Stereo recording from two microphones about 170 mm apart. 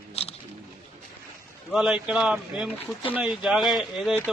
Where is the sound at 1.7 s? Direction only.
5° right (ahead or behind).